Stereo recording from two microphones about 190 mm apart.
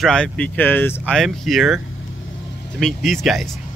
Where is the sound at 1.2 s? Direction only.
Centre (ahead or behind).